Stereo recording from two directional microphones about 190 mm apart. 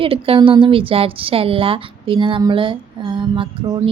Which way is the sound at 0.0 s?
30° right (ahead or behind).